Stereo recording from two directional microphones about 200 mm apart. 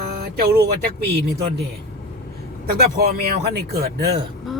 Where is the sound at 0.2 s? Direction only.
50° right (ahead or behind).